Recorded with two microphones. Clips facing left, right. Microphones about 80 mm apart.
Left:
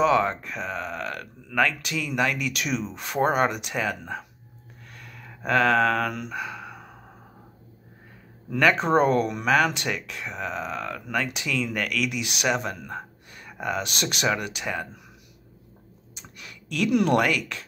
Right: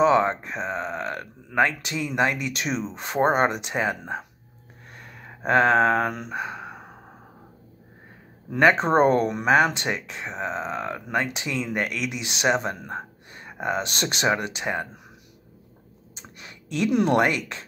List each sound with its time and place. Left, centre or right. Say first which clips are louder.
0.0 s speech: right 2 dB; right
4.9 s a sound: right 2 dB; right
8.5 s speech: right 2 dB; right
16.2 s speech: right 1 dB; right